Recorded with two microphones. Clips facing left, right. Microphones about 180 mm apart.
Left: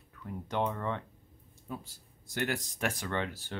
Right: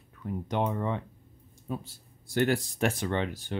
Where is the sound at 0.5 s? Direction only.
15° right (ahead or behind).